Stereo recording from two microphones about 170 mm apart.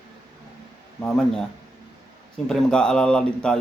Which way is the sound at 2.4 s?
5° left (ahead or behind).